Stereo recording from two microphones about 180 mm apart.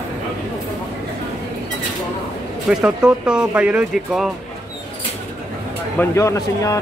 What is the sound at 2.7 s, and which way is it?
Speech, 5° right (ahead or behind).